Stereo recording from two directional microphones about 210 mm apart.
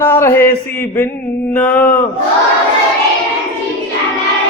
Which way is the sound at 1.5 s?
10° left (ahead or behind).